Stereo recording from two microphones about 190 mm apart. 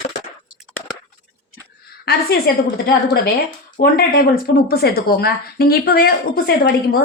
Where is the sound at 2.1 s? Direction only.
55° left (ahead or behind).